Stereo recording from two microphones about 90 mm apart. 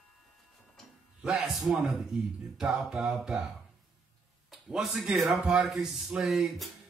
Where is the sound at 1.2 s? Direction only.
5° right (ahead or behind).